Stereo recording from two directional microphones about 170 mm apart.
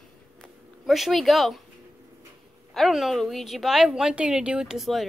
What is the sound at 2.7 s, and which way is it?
A woman's voice, centre (ahead or behind).